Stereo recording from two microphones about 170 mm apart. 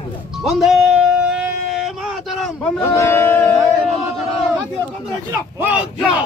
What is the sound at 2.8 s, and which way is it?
Speech, 15° left (ahead or behind).